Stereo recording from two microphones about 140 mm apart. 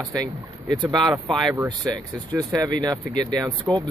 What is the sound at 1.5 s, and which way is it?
Speech, 25° right (ahead or behind).